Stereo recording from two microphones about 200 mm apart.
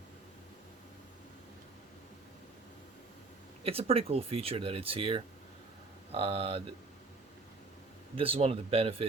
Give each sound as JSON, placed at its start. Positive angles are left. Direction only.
{"t": 3.6, "sound": "speech", "side_deg": -30}
{"t": 8.1, "sound": "speech", "side_deg": -30}